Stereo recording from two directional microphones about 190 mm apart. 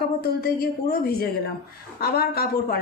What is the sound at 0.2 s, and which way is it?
A woman's voice, 50° left (ahead or behind).